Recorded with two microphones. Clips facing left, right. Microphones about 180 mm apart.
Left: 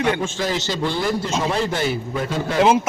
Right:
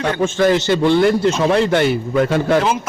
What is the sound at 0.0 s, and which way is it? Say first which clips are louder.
A man's voice: right 6 dB; 60° right (ahead or behind).